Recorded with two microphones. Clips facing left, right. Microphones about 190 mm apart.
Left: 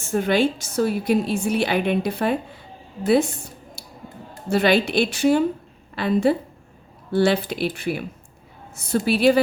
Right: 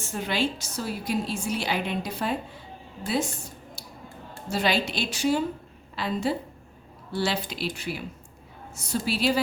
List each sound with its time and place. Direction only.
0.1 s a woman's voice: 55° left (ahead or behind)
4.4 s a woman's voice: 60° left (ahead or behind)